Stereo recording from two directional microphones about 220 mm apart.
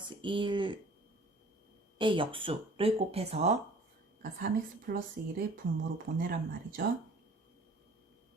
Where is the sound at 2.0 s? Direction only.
25° right (ahead or behind).